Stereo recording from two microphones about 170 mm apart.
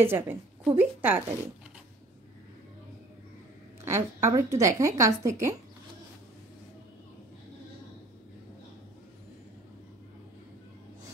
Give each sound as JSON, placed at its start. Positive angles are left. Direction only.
{"t": 0.0, "sound": "a woman's voice", "side_deg": -10}
{"t": 3.8, "sound": "a woman's voice", "side_deg": -15}